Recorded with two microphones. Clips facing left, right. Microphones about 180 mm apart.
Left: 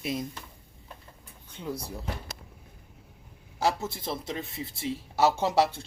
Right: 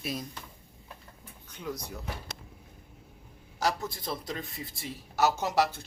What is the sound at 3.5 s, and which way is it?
Speech, 25° left (ahead or behind).